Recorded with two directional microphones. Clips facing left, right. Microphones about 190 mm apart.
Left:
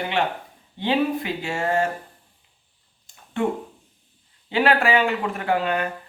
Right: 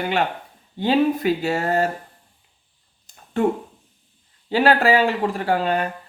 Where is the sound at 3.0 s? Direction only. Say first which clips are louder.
Right 3 dB; 40° right (ahead or behind).